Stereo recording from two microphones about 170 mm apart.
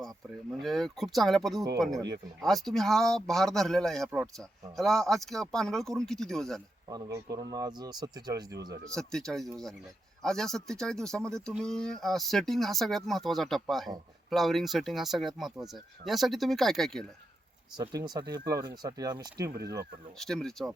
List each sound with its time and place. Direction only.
0.6 s speech: centre (ahead or behind)
2.4 s speech: centre (ahead or behind)
6.8 s speech: 20° right (ahead or behind)
8.8 s speech: 5° left (ahead or behind)
17.7 s speech: 25° right (ahead or behind)
20.1 s speech: 5° left (ahead or behind)